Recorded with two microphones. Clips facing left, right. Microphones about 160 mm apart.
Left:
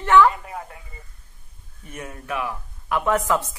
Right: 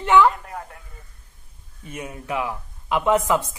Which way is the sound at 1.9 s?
15° right (ahead or behind).